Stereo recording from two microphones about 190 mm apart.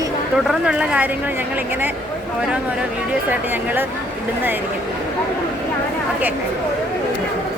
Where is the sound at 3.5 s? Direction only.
10° right (ahead or behind).